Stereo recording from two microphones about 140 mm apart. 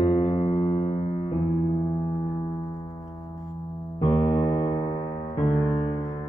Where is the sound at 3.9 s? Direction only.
35° left (ahead or behind).